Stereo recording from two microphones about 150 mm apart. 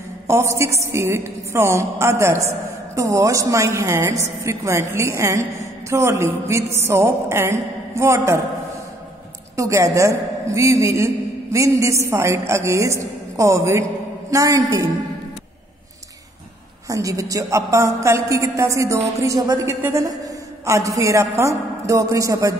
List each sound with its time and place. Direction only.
0.3 s a woman's voice: 20° right (ahead or behind)
9.6 s a woman's voice: 20° right (ahead or behind)
16.8 s a woman's voice: 20° right (ahead or behind)